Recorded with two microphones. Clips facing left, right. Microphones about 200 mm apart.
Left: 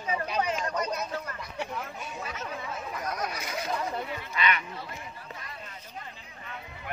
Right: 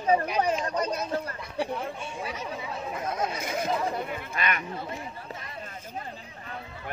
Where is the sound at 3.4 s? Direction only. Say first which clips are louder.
Right 4 dB; 50° right (ahead or behind).